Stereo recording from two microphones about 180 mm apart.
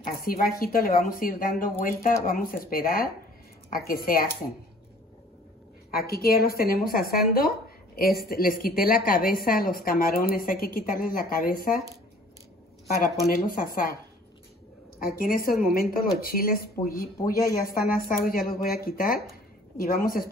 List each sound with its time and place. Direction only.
0.0 s a woman's voice: 55° left (ahead or behind)
5.9 s a woman's voice: 55° left (ahead or behind)
13.3 s a woman's voice: 50° left (ahead or behind)
15.0 s a woman's voice: 55° left (ahead or behind)